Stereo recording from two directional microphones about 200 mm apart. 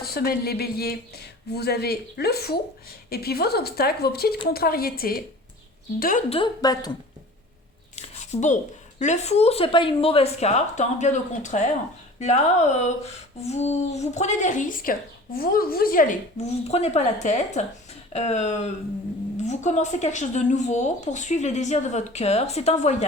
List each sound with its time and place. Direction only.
0.0 s speech: 50° left (ahead or behind)
6.3 s a woman's voice: 20° left (ahead or behind)
7.9 s a sound: 35° left (ahead or behind)
9.0 s speech: 35° left (ahead or behind)